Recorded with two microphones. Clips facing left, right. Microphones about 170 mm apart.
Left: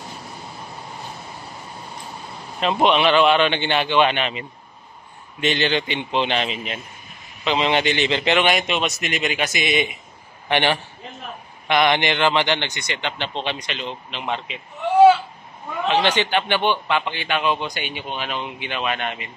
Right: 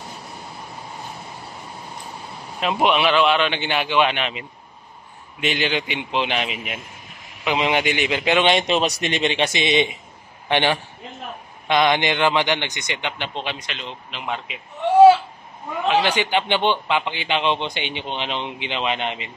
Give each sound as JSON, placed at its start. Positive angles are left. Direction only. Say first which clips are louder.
{"t": 2.6, "sound": "a man's voice", "louder": "left 1 dB", "side_deg": -5}
{"t": 8.5, "sound": "a man's voice", "louder": "right 2 dB", "side_deg": -30}
{"t": 10.5, "sound": "a man's voice", "louder": "even", "side_deg": -15}
{"t": 15.9, "sound": "a man's voice", "louder": "even", "side_deg": -10}